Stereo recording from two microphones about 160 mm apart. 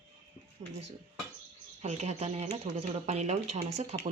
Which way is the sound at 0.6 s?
40° right (ahead or behind).